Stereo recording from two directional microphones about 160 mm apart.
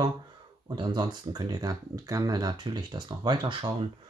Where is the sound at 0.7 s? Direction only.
25° right (ahead or behind).